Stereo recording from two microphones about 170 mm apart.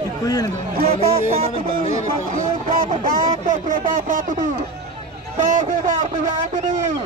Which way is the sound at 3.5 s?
55° right (ahead or behind).